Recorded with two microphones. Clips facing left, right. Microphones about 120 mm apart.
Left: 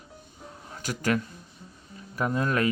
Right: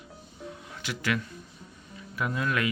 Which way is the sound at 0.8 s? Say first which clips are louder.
Left 4 dB; 40° left (ahead or behind).